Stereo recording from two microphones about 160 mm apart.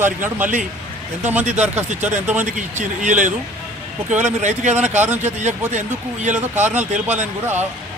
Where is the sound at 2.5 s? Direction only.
50° right (ahead or behind).